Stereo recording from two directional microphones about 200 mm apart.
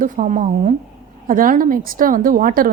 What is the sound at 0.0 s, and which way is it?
A woman's voice, 40° right (ahead or behind).